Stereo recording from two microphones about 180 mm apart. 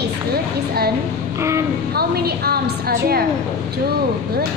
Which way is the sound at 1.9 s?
60° right (ahead or behind).